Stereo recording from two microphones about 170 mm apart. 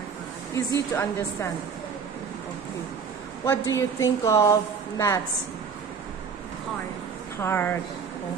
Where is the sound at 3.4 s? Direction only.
20° left (ahead or behind).